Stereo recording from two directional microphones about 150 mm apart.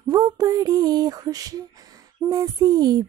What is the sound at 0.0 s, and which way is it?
Speech, 25° right (ahead or behind).